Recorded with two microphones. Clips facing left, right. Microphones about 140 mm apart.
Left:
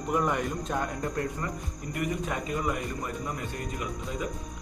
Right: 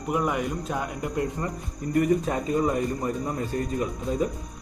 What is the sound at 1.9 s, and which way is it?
Speech, 40° right (ahead or behind).